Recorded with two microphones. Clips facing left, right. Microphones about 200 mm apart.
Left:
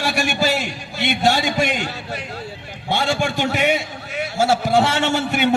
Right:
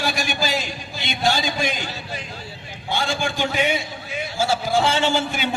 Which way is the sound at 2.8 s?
65° left (ahead or behind).